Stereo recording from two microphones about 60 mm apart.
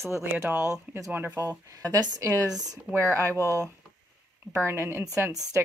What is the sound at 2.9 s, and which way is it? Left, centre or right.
Speech, right.